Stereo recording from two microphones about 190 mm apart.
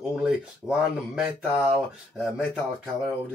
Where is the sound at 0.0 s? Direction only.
5° right (ahead or behind).